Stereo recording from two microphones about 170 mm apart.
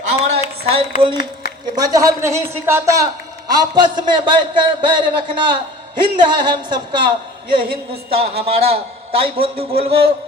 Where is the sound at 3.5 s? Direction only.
25° right (ahead or behind).